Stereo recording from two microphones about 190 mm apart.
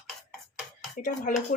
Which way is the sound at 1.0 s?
40° left (ahead or behind).